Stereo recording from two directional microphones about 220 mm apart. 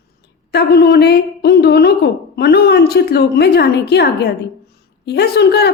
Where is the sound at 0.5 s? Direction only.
50° left (ahead or behind).